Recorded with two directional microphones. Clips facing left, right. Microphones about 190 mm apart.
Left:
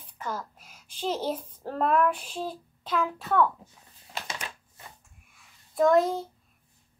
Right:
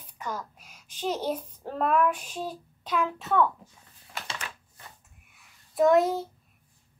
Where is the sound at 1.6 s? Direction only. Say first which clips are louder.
Left 1 dB; 10° right (ahead or behind).